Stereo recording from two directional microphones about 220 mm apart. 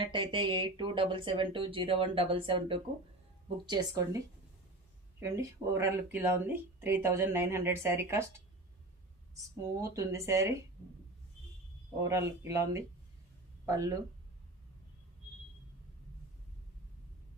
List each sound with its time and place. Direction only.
0.0 s speech: 20° right (ahead or behind)
3.7 s speech: 15° right (ahead or behind)
5.2 s speech: 15° right (ahead or behind)
9.9 s speech: 15° right (ahead or behind)
12.0 s speech: 10° right (ahead or behind)